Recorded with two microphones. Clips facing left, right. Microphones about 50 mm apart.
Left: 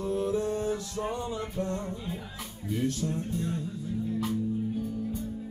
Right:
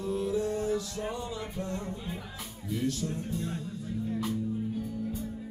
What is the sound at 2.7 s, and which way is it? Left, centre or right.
Music, left.